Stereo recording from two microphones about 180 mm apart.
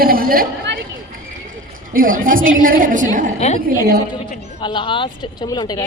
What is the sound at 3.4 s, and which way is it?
A woman's voice, 35° left (ahead or behind).